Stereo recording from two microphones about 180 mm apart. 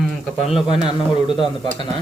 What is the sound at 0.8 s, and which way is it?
Speech, 25° left (ahead or behind).